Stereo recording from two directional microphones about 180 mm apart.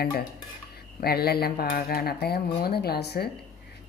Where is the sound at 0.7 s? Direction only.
60° left (ahead or behind).